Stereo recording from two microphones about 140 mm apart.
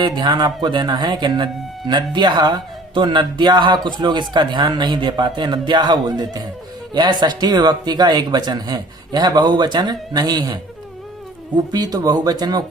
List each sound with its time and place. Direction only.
0.0 s speech: 30° right (ahead or behind)